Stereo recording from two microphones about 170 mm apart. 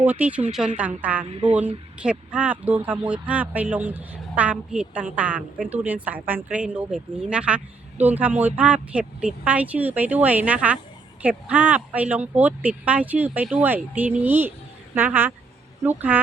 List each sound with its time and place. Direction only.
0.0 s a woman's voice: 10° right (ahead or behind)
1.3 s speech: 30° right (ahead or behind)
2.0 s a woman's voice: 5° right (ahead or behind)